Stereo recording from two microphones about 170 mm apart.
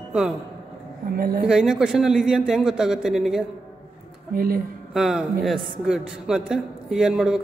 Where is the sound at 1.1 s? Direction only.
60° right (ahead or behind).